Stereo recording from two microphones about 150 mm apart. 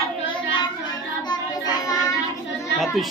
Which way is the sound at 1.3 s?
25° left (ahead or behind).